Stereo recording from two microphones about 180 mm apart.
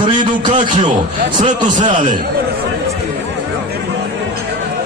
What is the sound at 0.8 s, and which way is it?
Speech, 25° right (ahead or behind).